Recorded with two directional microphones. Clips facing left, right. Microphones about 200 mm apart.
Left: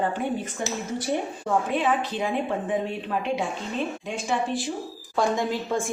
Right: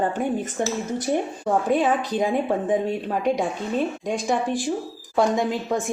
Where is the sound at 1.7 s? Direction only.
40° right (ahead or behind).